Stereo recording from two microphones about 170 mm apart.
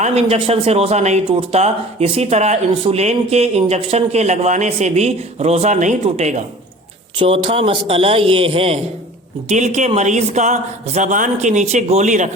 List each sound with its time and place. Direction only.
0.0 s a man's voice: 35° right (ahead or behind)